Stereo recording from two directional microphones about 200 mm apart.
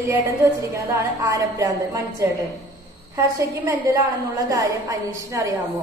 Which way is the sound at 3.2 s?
15° right (ahead or behind).